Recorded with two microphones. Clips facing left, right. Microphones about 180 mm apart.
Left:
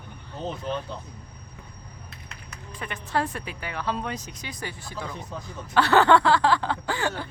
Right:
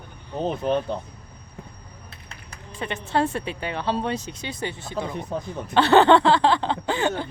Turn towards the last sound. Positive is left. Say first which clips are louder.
# right 4 dB
turn(degrees=-20)  # may be behind; listen again after turning